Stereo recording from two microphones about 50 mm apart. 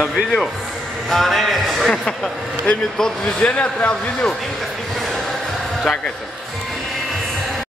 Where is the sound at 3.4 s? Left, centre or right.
Left.